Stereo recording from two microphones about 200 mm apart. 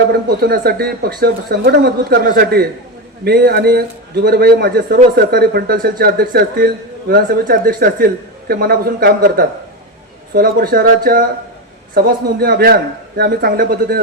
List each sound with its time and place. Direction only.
0.1 s a man's voice: 50° right (ahead or behind)